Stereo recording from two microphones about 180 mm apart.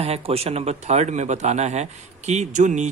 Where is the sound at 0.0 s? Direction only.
35° right (ahead or behind).